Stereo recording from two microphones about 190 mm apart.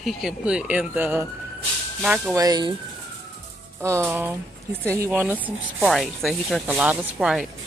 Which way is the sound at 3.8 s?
15° right (ahead or behind).